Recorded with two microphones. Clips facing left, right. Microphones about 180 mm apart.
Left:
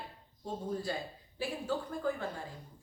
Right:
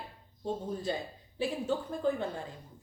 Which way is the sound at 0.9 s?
20° right (ahead or behind).